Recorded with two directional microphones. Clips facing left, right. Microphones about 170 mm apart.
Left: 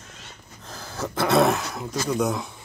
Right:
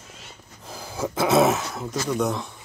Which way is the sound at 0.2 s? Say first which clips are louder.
Even; 10° right (ahead or behind).